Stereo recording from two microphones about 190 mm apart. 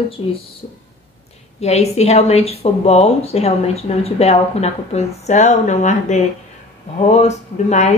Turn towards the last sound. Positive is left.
turn(degrees=35)  # may be behind; listen again after turning